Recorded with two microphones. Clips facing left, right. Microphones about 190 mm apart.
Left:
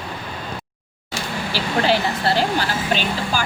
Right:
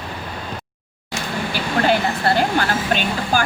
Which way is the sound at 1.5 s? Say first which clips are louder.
Right 1 dB; 50° right (ahead or behind).